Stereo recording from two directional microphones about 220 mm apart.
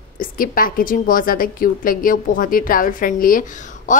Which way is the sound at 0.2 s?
40° left (ahead or behind).